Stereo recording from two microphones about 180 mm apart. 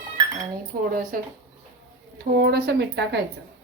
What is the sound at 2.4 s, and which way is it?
Speech, 65° right (ahead or behind).